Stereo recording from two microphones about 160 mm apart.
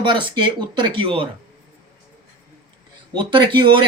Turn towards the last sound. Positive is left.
turn(degrees=-30)  # may be behind; listen again after turning